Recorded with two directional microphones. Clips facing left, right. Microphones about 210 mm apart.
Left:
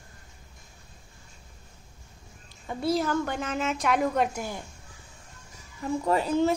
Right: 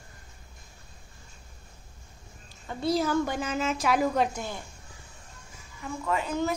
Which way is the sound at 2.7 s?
5° left (ahead or behind).